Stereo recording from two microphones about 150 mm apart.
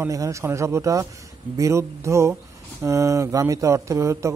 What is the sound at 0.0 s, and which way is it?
A man's voice, 20° right (ahead or behind).